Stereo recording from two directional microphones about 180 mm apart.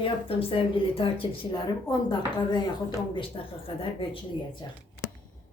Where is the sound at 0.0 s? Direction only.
30° left (ahead or behind).